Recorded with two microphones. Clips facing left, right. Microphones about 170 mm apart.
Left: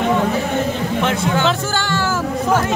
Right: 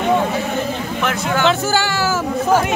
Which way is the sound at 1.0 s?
25° left (ahead or behind).